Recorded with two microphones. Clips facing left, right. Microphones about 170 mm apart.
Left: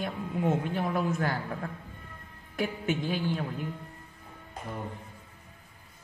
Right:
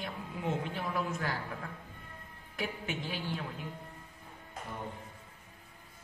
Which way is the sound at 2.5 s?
50° left (ahead or behind).